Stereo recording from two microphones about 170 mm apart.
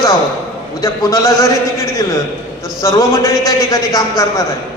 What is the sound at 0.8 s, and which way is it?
Speech, 20° left (ahead or behind).